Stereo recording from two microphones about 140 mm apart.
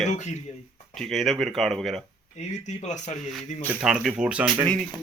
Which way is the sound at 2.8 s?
60° left (ahead or behind).